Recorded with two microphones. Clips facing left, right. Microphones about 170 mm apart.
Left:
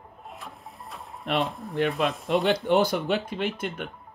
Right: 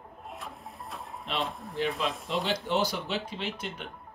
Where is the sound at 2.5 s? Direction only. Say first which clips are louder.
Left 6 dB; 55° left (ahead or behind).